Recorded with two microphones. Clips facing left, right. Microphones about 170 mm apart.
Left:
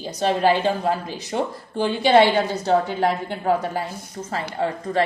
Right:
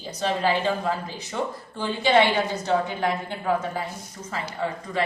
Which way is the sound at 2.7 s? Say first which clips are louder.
Left 5 dB; 35° left (ahead or behind).